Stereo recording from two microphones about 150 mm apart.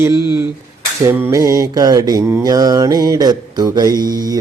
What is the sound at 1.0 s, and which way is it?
Mantra, 20° right (ahead or behind).